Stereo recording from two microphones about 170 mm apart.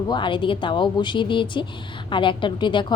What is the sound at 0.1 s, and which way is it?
A woman's voice, 30° left (ahead or behind).